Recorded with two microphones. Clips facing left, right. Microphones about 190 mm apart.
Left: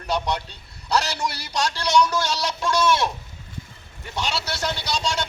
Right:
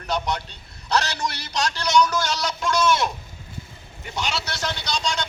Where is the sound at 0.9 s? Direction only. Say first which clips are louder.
Even; 10° left (ahead or behind).